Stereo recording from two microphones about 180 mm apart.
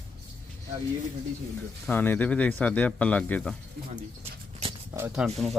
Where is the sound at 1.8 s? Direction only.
10° left (ahead or behind).